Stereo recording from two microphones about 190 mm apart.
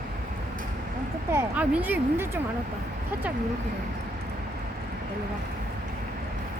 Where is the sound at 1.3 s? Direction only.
10° right (ahead or behind).